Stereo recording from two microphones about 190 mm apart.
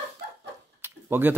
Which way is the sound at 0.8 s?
10° right (ahead or behind).